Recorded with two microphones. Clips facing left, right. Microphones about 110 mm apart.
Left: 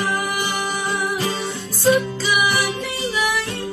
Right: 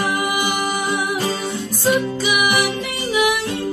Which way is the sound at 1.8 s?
15° right (ahead or behind).